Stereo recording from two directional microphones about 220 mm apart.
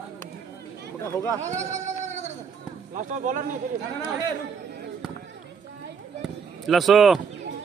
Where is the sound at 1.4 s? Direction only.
30° right (ahead or behind).